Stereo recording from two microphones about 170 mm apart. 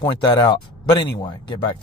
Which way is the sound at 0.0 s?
25° left (ahead or behind).